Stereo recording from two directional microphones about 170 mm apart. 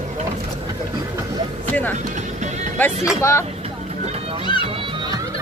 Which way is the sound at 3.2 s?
15° left (ahead or behind).